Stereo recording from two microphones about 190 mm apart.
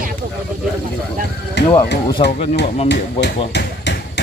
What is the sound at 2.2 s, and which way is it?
Speech, 30° left (ahead or behind).